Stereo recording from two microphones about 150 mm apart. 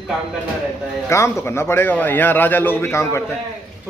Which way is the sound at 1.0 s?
20° left (ahead or behind).